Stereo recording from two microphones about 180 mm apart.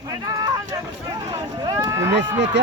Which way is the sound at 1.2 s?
20° right (ahead or behind).